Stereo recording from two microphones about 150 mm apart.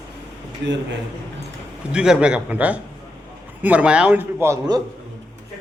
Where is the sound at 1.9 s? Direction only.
5° right (ahead or behind).